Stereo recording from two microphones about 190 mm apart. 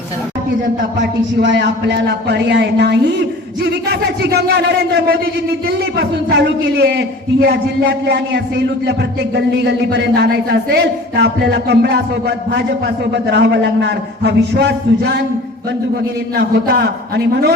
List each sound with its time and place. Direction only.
1.4 s a man's voice: 70° right (ahead or behind)
16.3 s a man's voice: 60° right (ahead or behind)